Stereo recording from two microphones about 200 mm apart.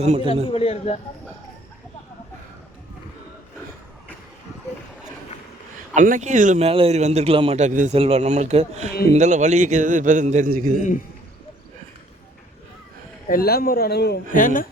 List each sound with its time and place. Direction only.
0.0 s a man's voice: 30° right (ahead or behind)
0.5 s speech: 30° left (ahead or behind)
5.9 s a man's voice: 40° right (ahead or behind)
13.2 s a man's voice: 50° left (ahead or behind)
14.3 s a man's voice: 40° left (ahead or behind)